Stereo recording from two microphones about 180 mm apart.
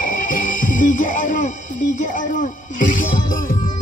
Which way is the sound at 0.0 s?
50° left (ahead or behind).